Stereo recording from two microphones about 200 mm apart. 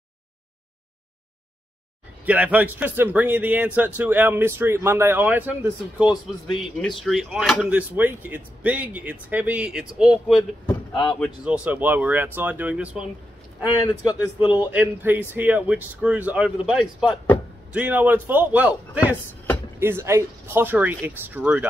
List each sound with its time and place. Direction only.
2.2 s a man's voice: 5° right (ahead or behind)
10.7 s speech: 20° left (ahead or behind)
11.1 s a man's voice: 5° right (ahead or behind)
14.4 s a man's voice: 20° left (ahead or behind)
14.7 s a man's voice: 10° right (ahead or behind)
19.8 s a man's voice: 10° right (ahead or behind)